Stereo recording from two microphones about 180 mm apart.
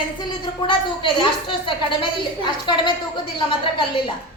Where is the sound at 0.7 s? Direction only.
30° left (ahead or behind).